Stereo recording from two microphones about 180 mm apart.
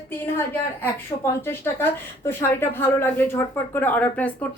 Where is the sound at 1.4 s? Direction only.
10° left (ahead or behind).